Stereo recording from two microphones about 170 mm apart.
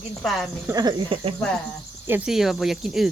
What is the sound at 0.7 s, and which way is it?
Speech, 25° right (ahead or behind).